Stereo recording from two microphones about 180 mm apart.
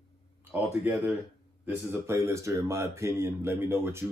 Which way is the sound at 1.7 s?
15° right (ahead or behind).